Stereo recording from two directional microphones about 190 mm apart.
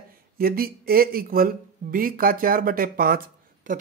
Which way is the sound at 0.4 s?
50° right (ahead or behind).